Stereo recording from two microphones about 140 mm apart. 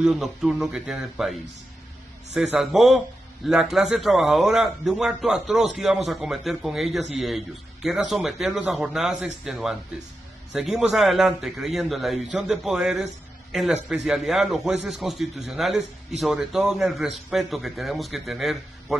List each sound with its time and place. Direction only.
0.0 s a man's voice: 5° right (ahead or behind)
2.3 s a man's voice: centre (ahead or behind)